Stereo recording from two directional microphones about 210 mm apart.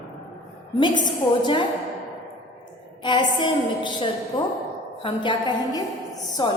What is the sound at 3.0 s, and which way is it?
A woman's voice, 20° left (ahead or behind).